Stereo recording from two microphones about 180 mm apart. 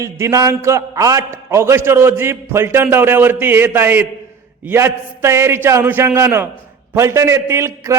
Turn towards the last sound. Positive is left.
turn(degrees=-15)  # may be behind; listen again after turning